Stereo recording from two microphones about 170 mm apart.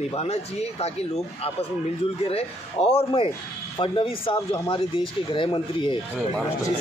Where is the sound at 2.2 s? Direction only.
35° left (ahead or behind).